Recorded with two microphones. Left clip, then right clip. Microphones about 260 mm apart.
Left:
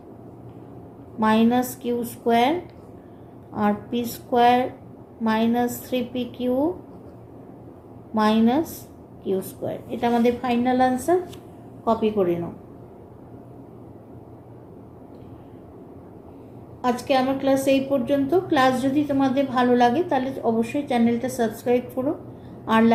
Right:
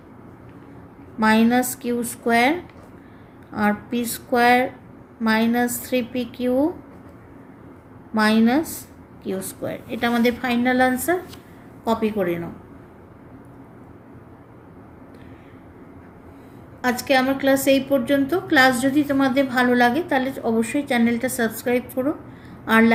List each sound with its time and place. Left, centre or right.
1.2 s a woman's voice: right
8.1 s a woman's voice: right
16.8 s a woman's voice: right